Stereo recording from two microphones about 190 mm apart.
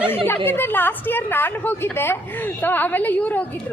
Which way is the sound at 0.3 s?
10° left (ahead or behind).